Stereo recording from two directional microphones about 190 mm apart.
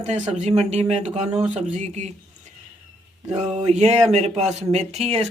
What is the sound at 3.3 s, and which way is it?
Speech, 35° right (ahead or behind).